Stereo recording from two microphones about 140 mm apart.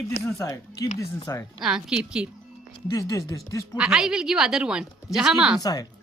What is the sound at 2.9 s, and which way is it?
Speech, 25° left (ahead or behind).